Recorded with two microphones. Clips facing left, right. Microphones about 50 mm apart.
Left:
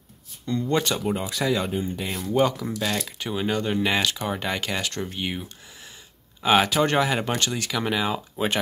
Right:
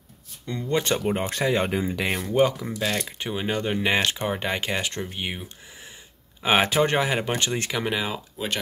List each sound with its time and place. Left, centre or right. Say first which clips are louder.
0.5 s speech: left 1 dB; centre
1.7 s speech: right 3 dB; right
2.2 s speech: left 1 dB; centre
7.8 s speech: left 2 dB; centre